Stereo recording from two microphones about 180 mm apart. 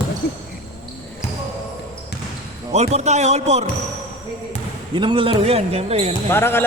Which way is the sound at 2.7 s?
35° right (ahead or behind).